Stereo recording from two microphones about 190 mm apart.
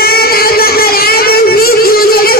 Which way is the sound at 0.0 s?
55° left (ahead or behind).